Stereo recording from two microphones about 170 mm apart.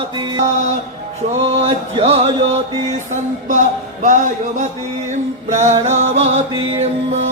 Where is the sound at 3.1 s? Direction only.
45° right (ahead or behind).